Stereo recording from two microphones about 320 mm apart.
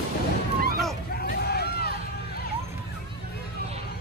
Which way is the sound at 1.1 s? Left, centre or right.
Left.